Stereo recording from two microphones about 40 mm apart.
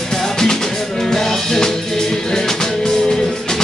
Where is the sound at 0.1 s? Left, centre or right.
Centre.